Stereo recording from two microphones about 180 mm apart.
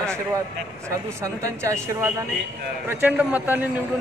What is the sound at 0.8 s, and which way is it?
A man's voice, 15° right (ahead or behind).